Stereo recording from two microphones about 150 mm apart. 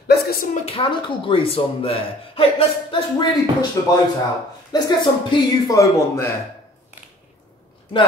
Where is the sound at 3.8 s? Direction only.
20° left (ahead or behind).